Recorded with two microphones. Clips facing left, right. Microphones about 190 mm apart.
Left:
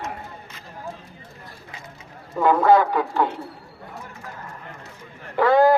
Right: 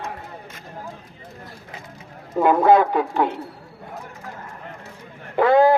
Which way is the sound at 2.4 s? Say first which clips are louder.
Right 1 dB; 20° right (ahead or behind).